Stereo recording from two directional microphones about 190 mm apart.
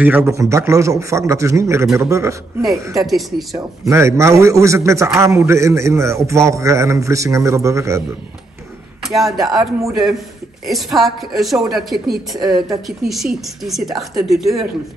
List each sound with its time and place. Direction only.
0.0 s a man's voice: 10° right (ahead or behind)
3.1 s speech: centre (ahead or behind)
3.5 s a man's voice: 15° right (ahead or behind)
9.0 s speech: centre (ahead or behind)
10.7 s speech: centre (ahead or behind)
12.4 s speech: 20° right (ahead or behind)
13.1 s speech: centre (ahead or behind)